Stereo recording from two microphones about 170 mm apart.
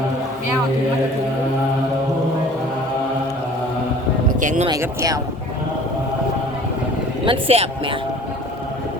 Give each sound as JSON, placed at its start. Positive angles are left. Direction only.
{"t": 4.4, "sound": "speech", "side_deg": -45}
{"t": 4.8, "sound": "speech", "side_deg": -20}
{"t": 7.3, "sound": "speech", "side_deg": -35}